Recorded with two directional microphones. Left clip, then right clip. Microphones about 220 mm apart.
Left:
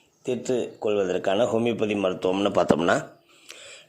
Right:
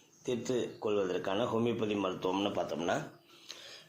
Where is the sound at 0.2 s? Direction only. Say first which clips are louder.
Left 8 dB; 45° left (ahead or behind).